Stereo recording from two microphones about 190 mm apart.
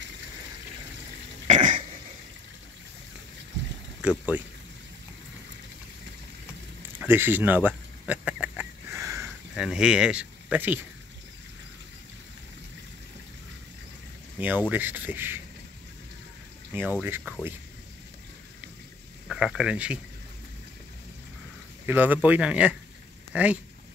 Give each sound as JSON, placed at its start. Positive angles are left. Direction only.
{"t": 1.5, "sound": "cough", "side_deg": -45}
{"t": 4.0, "sound": "speech", "side_deg": -5}
{"t": 7.0, "sound": "a sound", "side_deg": -10}
{"t": 9.6, "sound": "speech", "side_deg": -5}
{"t": 14.4, "sound": "speech", "side_deg": -10}
{"t": 17.0, "sound": "speech", "side_deg": -10}
{"t": 19.2, "sound": "speech", "side_deg": 0}
{"t": 21.8, "sound": "speech", "side_deg": -10}